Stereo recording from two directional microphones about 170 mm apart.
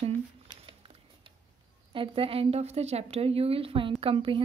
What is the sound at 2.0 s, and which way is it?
A woman's voice, 35° right (ahead or behind).